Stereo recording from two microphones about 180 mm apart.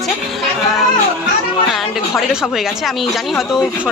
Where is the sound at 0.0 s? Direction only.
Centre (ahead or behind).